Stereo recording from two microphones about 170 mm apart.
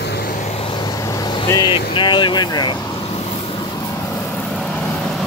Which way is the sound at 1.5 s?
25° left (ahead or behind).